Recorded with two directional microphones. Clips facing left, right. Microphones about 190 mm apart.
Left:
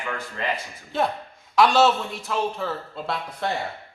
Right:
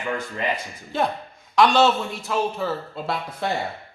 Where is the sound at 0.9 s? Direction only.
Centre (ahead or behind).